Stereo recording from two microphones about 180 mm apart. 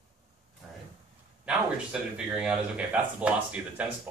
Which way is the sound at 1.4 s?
5° right (ahead or behind).